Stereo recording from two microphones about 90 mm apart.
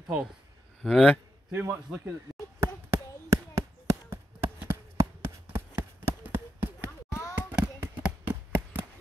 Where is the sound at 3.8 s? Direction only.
30° right (ahead or behind).